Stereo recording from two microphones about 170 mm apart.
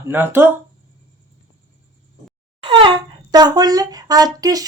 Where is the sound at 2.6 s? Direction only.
30° right (ahead or behind).